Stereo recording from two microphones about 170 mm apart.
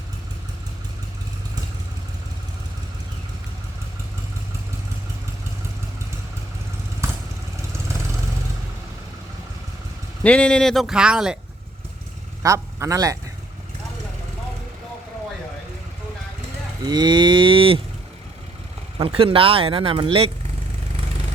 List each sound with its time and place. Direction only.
7.0 s vehicle: 15° right (ahead or behind)
10.2 s speech: 5° left (ahead or behind)
12.4 s speech: 20° right (ahead or behind)
16.8 s cattle: 25° right (ahead or behind)
18.9 s speech: 35° right (ahead or behind)